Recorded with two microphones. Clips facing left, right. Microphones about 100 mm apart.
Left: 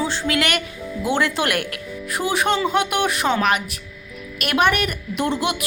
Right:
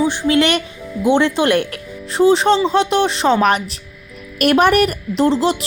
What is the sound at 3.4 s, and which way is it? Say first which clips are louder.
A woman's voice: right 5 dB; 35° right (ahead or behind).